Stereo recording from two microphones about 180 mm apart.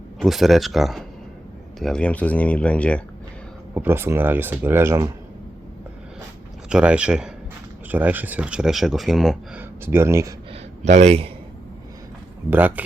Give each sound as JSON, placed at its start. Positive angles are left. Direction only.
{"t": 0.2, "sound": "speech", "side_deg": 0}
{"t": 3.8, "sound": "speech", "side_deg": -10}
{"t": 6.7, "sound": "speech", "side_deg": -5}
{"t": 9.8, "sound": "speech", "side_deg": -15}
{"t": 10.5, "sound": "a sound", "side_deg": -40}
{"t": 12.5, "sound": "speech", "side_deg": -10}